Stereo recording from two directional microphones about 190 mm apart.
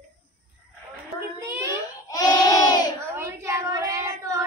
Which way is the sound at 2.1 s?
20° left (ahead or behind).